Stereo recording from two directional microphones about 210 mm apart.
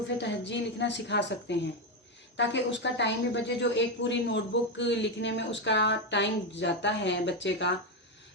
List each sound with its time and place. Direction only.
0.2 s speech: 55° left (ahead or behind)